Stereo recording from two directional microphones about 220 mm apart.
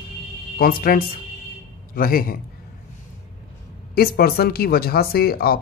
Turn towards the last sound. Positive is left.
turn(degrees=45)  # may be behind; listen again after turning